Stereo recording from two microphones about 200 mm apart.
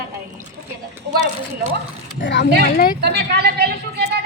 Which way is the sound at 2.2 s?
60° left (ahead or behind).